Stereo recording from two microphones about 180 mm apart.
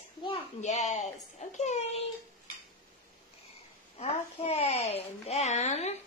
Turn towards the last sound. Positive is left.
turn(degrees=40)  # may be behind; listen again after turning